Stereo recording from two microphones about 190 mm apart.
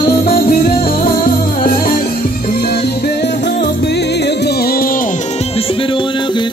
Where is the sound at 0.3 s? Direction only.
50° left (ahead or behind).